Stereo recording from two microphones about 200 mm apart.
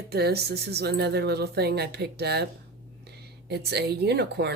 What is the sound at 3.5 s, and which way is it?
Speech, 55° right (ahead or behind).